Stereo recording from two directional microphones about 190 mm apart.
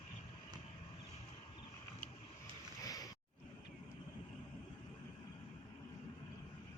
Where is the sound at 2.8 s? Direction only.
20° left (ahead or behind).